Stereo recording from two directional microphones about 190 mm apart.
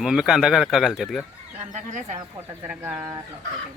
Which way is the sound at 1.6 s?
40° right (ahead or behind).